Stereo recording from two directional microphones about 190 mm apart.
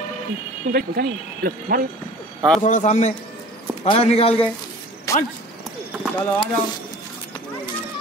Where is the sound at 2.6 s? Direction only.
40° left (ahead or behind).